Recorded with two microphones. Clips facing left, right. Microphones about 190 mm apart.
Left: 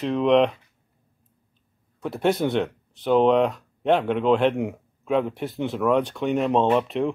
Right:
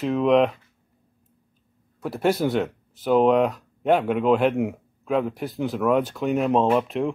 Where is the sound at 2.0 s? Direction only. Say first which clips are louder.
Even; centre (ahead or behind).